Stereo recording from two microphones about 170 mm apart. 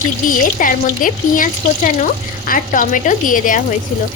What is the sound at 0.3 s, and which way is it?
Speech, 50° left (ahead or behind).